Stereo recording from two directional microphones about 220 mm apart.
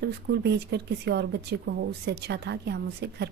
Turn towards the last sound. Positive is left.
turn(degrees=-50)  # may be behind; listen again after turning